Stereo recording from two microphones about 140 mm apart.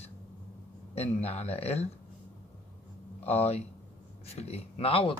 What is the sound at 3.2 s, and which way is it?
Speech, 45° left (ahead or behind).